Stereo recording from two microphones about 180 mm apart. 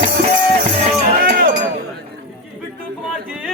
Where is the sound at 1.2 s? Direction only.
55° right (ahead or behind).